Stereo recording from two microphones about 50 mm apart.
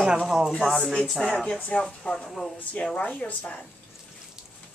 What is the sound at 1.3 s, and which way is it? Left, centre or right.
A woman's voice, centre.